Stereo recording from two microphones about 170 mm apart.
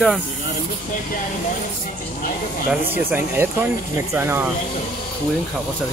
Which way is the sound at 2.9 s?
10° right (ahead or behind).